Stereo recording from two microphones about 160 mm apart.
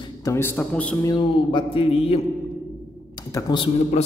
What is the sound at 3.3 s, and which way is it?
Speech, 30° left (ahead or behind).